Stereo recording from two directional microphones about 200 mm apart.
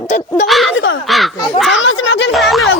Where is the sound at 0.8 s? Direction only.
75° left (ahead or behind).